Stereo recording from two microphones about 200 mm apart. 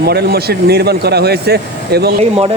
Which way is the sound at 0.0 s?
55° right (ahead or behind).